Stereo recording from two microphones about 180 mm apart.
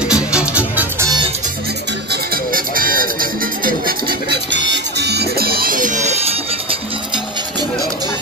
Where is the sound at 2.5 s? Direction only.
50° right (ahead or behind).